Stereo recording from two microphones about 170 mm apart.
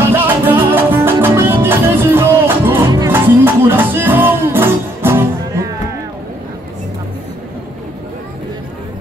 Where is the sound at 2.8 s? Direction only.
25° right (ahead or behind).